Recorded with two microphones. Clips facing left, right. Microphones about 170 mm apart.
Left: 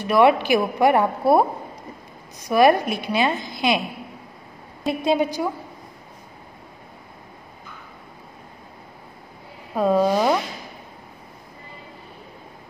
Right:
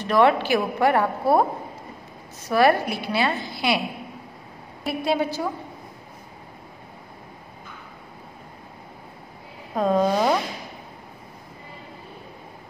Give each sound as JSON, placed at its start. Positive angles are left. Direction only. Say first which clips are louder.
{"t": 0.0, "sound": "speech", "louder": "left 2 dB", "side_deg": 10}
{"t": 2.4, "sound": "speech", "louder": "left 3 dB", "side_deg": 15}
{"t": 4.8, "sound": "speech", "louder": "left 3 dB", "side_deg": 20}
{"t": 9.8, "sound": "speech", "louder": "left 2 dB", "side_deg": 5}